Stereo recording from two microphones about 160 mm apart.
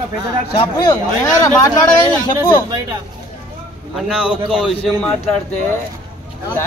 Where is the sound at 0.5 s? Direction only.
30° left (ahead or behind).